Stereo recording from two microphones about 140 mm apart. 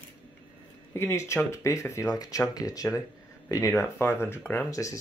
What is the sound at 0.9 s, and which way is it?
Speech, 20° left (ahead or behind).